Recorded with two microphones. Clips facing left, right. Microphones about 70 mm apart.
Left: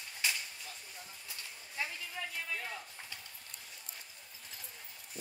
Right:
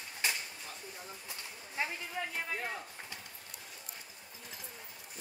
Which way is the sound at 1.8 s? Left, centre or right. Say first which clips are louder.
Right 3 dB; right.